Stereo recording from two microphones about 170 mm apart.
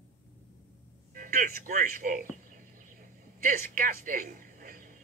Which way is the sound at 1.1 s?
55° right (ahead or behind).